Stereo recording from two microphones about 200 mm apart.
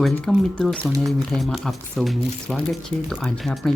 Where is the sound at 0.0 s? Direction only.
Centre (ahead or behind).